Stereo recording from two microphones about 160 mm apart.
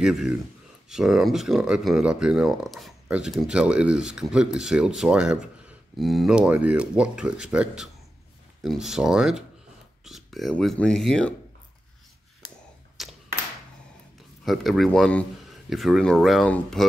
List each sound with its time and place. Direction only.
0.0 s speech: 5° right (ahead or behind)
13.0 s a sound: centre (ahead or behind)
14.4 s speech: centre (ahead or behind)